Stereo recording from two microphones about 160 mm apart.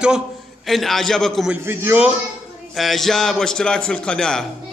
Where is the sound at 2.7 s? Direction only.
Centre (ahead or behind).